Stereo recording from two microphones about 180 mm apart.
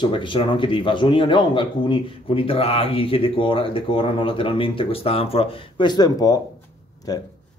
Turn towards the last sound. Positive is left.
turn(degrees=20)  # may be behind; listen again after turning